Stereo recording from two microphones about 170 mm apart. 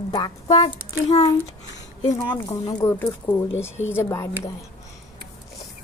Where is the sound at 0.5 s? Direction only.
40° left (ahead or behind).